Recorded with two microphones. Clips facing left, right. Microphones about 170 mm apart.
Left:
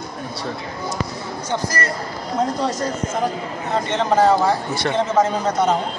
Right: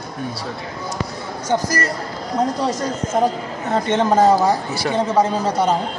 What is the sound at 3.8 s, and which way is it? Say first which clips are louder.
Speech: right 2 dB; 45° right (ahead or behind).